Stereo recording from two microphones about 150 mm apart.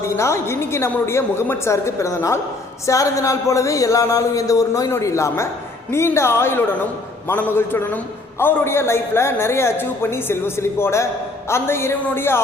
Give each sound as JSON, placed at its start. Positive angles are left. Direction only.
{"t": 0.0, "sound": "a man's voice", "side_deg": 20}